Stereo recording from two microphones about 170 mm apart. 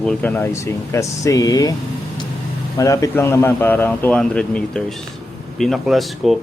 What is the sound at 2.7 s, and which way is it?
Speech, 20° left (ahead or behind).